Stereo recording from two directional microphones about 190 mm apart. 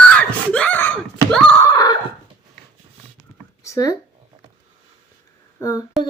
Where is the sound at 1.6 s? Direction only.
20° left (ahead or behind).